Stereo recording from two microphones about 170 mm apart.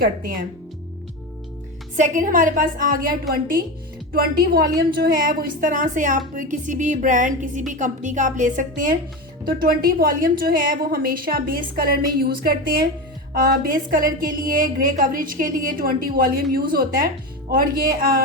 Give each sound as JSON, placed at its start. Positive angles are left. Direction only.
{"t": 0.0, "sound": "a woman's voice", "side_deg": -60}
{"t": 2.0, "sound": "a woman's voice", "side_deg": -50}